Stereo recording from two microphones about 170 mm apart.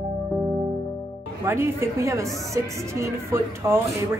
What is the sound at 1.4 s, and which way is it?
A woman's voice, 15° right (ahead or behind).